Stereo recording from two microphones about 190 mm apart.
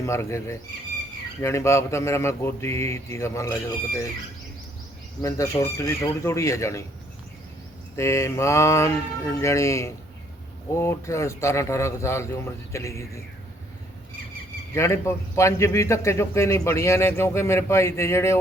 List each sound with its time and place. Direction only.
0.0 s a man's voice: 15° left (ahead or behind)
5.2 s a man's voice: 15° left (ahead or behind)
7.9 s a man's voice: 15° left (ahead or behind)
14.8 s a man's voice: 15° left (ahead or behind)